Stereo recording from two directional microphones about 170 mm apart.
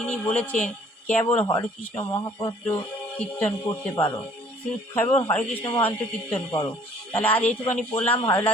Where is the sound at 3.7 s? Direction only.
15° left (ahead or behind).